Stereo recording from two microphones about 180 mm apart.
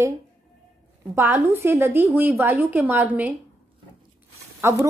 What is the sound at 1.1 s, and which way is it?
A woman's voice, 15° right (ahead or behind).